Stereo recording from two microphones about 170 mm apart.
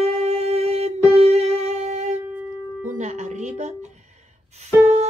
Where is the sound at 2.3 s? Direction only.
10° right (ahead or behind).